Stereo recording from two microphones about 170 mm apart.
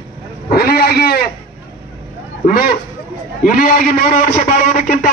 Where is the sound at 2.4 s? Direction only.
60° left (ahead or behind).